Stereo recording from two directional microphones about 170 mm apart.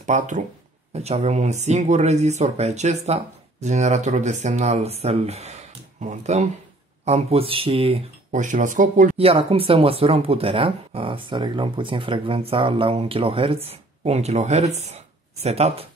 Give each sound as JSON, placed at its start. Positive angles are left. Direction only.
{"t": 0.0, "sound": "speech", "side_deg": -45}
{"t": 9.1, "sound": "speech", "side_deg": -35}